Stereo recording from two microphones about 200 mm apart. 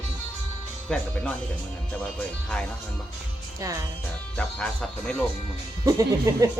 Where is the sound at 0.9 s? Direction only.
5° left (ahead or behind).